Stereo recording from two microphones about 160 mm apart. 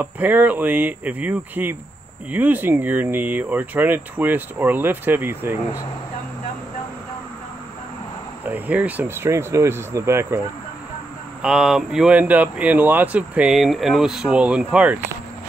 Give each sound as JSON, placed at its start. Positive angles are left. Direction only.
{"t": 0.0, "sound": "speech", "side_deg": -10}
{"t": 8.5, "sound": "speech", "side_deg": -10}
{"t": 11.4, "sound": "speech", "side_deg": -5}